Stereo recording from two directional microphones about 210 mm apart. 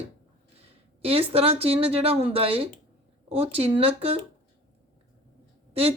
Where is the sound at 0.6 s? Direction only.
25° right (ahead or behind).